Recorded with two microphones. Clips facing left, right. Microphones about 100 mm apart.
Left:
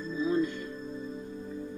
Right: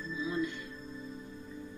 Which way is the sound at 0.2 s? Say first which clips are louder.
Left 7 dB; 45° left (ahead or behind).